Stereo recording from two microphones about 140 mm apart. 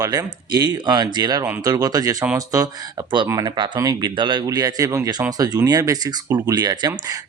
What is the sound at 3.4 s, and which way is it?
Speech, 35° right (ahead or behind).